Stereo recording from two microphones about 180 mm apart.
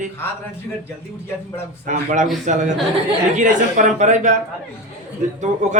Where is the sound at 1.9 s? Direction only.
45° right (ahead or behind).